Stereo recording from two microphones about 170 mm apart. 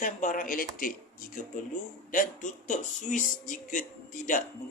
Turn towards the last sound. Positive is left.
turn(degrees=50)  # may be behind; listen again after turning